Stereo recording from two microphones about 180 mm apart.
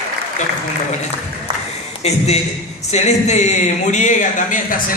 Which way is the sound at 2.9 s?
40° left (ahead or behind).